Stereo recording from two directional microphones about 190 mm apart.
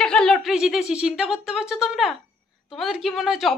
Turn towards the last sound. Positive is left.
turn(degrees=0)  # may be behind; listen again after turning